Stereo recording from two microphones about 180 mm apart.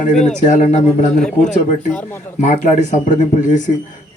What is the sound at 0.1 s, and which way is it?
Speech, 5° left (ahead or behind).